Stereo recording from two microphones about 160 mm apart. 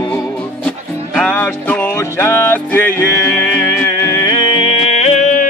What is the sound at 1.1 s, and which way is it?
Music, 10° left (ahead or behind).